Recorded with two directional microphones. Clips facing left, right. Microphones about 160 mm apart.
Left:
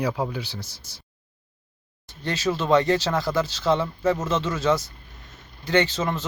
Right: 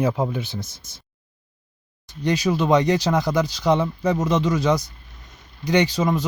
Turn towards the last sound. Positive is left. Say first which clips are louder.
# right 3 dB
turn(degrees=-15)  # may be behind; listen again after turning